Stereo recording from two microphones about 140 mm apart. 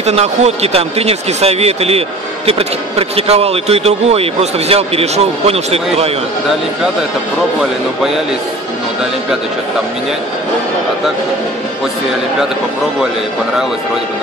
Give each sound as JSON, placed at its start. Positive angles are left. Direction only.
{"t": 0.0, "sound": "speech", "side_deg": -50}